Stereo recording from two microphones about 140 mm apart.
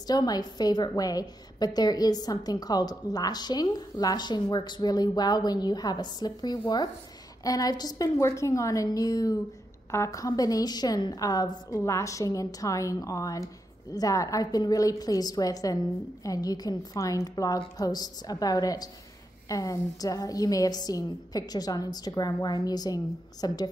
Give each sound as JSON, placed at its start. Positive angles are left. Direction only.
{"t": 0.0, "sound": "a woman's voice", "side_deg": 30}